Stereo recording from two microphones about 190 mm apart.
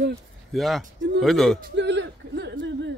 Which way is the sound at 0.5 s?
Centre (ahead or behind).